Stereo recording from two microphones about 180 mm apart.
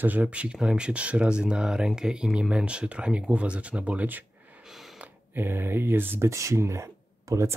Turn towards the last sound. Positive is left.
turn(degrees=-15)  # may be behind; listen again after turning